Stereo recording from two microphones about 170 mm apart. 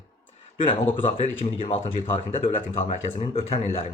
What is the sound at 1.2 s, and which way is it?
Speech, 40° left (ahead or behind).